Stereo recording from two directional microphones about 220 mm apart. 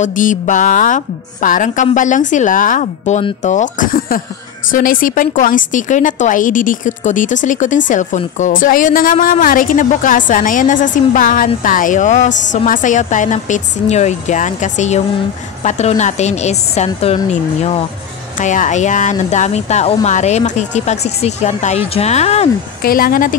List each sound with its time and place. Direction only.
0.0 s a woman's voice: 35° left (ahead or behind)
22.8 s a woman's voice: 45° left (ahead or behind)